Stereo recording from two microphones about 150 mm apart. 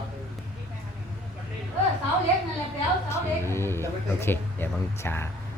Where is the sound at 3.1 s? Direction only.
15° left (ahead or behind).